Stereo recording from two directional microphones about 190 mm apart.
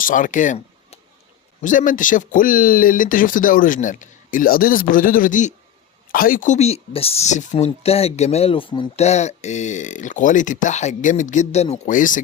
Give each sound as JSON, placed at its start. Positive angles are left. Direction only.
{"t": 0.0, "sound": "speech", "side_deg": 45}